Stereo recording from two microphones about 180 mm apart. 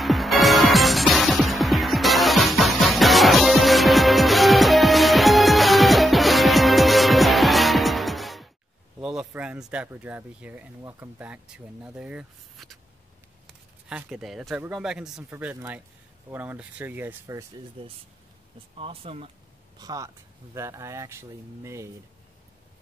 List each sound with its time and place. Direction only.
0.0 s music: centre (ahead or behind)
9.0 s speech: 5° right (ahead or behind)
13.8 s speech: 5° right (ahead or behind)
17.8 s speech: 30° right (ahead or behind)
19.8 s speech: 20° right (ahead or behind)